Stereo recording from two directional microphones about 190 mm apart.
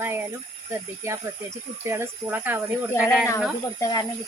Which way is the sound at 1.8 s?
15° right (ahead or behind).